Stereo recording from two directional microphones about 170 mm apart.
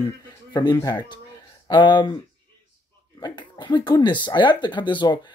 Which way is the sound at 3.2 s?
25° left (ahead or behind).